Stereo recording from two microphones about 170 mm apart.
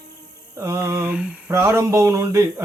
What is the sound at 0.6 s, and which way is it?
Speech, 15° right (ahead or behind).